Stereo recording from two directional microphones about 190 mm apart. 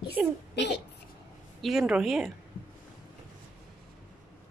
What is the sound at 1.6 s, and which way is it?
Speech, 5° right (ahead or behind).